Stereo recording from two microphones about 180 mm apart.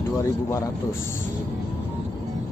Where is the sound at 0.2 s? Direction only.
15° left (ahead or behind).